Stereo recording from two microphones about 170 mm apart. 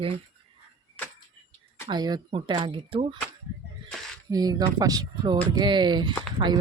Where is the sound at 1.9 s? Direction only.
25° right (ahead or behind).